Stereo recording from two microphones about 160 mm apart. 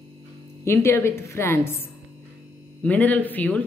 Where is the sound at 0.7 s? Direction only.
15° left (ahead or behind).